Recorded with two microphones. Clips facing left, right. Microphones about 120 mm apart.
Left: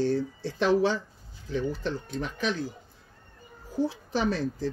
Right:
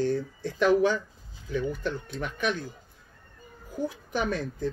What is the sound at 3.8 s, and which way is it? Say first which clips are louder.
Speech: left 3 dB; 30° left (ahead or behind).